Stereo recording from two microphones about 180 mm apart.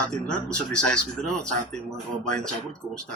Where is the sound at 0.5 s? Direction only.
5° left (ahead or behind).